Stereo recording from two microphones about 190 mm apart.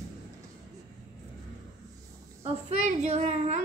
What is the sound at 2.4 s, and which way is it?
A child's voice, 35° right (ahead or behind).